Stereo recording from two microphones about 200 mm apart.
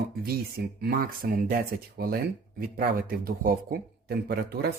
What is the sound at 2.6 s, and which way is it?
A man's voice, 45° right (ahead or behind).